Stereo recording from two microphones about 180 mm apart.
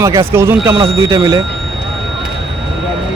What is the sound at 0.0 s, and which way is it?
Speech, 15° right (ahead or behind).